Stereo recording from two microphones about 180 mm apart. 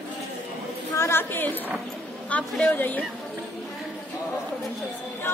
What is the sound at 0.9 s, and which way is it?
A woman's voice, 15° left (ahead or behind).